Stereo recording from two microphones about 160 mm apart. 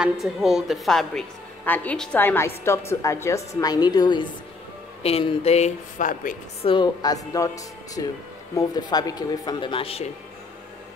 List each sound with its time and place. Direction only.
0.0 s a woman's voice: 5° right (ahead or behind); by 4.3 s 25° left (ahead or behind)
5.0 s speech: 40° left (ahead or behind); by 6.3 s 55° left (ahead or behind)
6.6 s speech: 30° left (ahead or behind)